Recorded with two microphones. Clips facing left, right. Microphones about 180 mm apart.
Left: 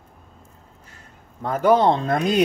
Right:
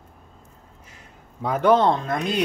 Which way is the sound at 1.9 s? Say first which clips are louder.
Left 3 dB; 30° left (ahead or behind).